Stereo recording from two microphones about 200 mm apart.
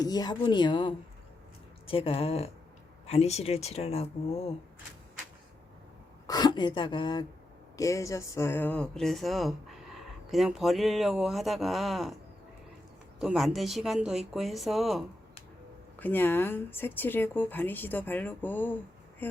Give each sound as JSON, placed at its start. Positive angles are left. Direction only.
{"t": 0.0, "sound": "speech", "side_deg": 20}
{"t": 6.2, "sound": "speech", "side_deg": 20}
{"t": 13.1, "sound": "speech", "side_deg": 0}
{"t": 16.0, "sound": "speech", "side_deg": 10}